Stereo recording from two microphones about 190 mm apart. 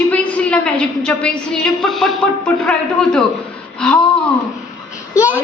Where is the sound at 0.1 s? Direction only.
5° left (ahead or behind).